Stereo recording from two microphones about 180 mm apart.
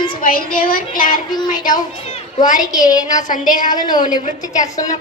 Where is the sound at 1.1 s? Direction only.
25° left (ahead or behind).